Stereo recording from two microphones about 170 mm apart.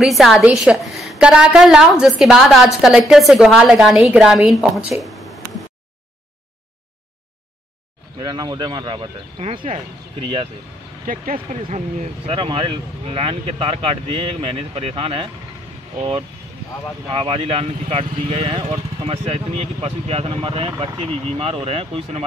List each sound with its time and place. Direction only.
0.0 s a woman's voice: centre (ahead or behind)
8.2 s speech: 25° right (ahead or behind)
11.3 s speech: 40° right (ahead or behind)
17.1 s speech: 30° right (ahead or behind)